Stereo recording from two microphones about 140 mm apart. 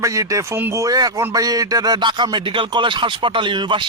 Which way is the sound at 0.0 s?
25° right (ahead or behind).